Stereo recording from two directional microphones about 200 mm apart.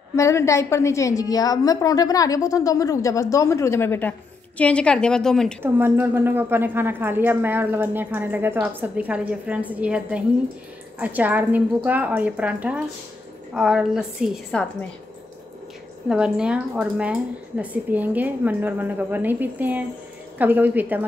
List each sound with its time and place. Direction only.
0.1 s a woman's voice: 15° left (ahead or behind)
5.6 s a woman's voice: 10° right (ahead or behind)
16.1 s a woman's voice: 5° right (ahead or behind)